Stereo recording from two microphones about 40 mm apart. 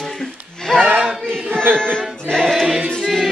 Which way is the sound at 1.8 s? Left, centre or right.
Centre.